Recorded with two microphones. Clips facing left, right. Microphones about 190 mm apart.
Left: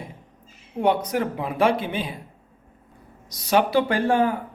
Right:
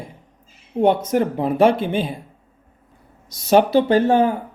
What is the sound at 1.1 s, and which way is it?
Speech, 45° right (ahead or behind).